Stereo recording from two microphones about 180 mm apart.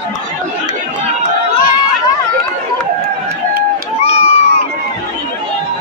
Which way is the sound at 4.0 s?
35° left (ahead or behind).